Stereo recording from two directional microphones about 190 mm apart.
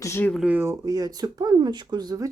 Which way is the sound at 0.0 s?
10° left (ahead or behind).